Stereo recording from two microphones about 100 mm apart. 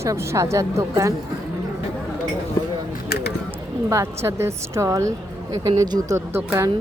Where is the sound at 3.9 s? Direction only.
30° right (ahead or behind).